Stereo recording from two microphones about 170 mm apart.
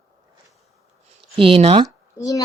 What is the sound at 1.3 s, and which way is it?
Speech, 30° right (ahead or behind).